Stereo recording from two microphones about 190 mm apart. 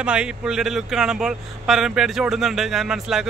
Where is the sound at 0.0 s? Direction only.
5° right (ahead or behind).